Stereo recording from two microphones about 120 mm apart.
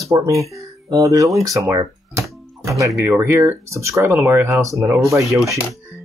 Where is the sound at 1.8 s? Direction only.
25° right (ahead or behind).